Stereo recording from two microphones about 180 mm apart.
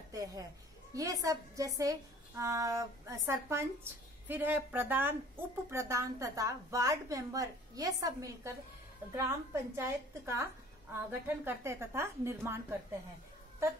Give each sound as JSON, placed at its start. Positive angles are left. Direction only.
{"t": 0.1, "sound": "a woman's voice", "side_deg": -20}